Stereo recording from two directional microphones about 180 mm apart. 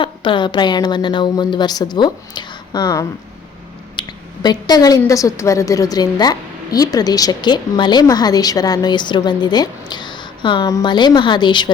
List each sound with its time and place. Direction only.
0.0 s a woman's voice: 25° left (ahead or behind)
4.4 s a woman's voice: 20° left (ahead or behind)